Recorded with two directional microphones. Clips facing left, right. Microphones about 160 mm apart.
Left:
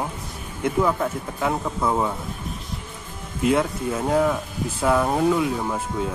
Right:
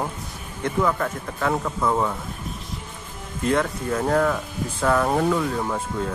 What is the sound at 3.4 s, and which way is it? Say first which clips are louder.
Speech: left 1 dB; 10° left (ahead or behind).